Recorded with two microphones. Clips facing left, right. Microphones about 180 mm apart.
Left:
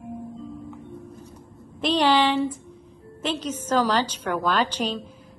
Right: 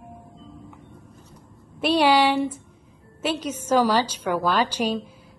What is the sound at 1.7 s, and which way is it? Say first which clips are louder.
A woman's voice: right 2 dB; 10° right (ahead or behind).